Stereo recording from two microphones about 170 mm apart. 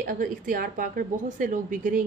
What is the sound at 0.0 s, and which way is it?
A woman's voice, 50° right (ahead or behind).